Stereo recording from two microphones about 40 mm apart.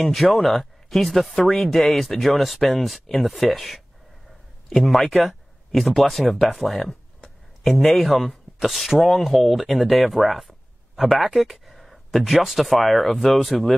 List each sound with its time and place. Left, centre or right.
0.1 s speech: centre